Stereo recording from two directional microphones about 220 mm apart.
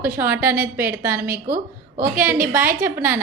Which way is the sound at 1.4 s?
40° right (ahead or behind).